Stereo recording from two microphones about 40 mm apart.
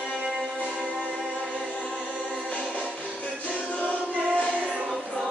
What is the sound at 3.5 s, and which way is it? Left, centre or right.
Choir, left.